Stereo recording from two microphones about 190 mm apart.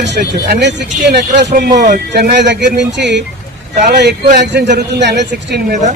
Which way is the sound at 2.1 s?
60° right (ahead or behind).